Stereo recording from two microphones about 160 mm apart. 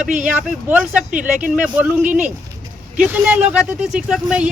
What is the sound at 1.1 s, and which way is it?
Speech, 55° right (ahead or behind).